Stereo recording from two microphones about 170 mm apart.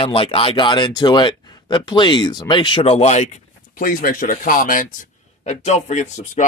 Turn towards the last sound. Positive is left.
turn(degrees=45)  # may be behind; listen again after turning